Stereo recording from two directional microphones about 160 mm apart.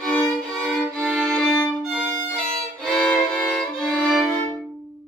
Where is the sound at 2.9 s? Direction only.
5° left (ahead or behind).